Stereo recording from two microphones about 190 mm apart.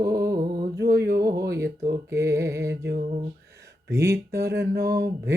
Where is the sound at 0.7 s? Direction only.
60° right (ahead or behind).